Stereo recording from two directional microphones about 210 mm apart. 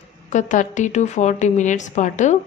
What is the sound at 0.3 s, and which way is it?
Speech, 35° left (ahead or behind).